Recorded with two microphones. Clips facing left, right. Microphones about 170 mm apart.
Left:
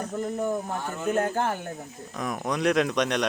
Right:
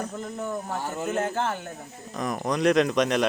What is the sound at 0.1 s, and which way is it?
Speech, 15° left (ahead or behind).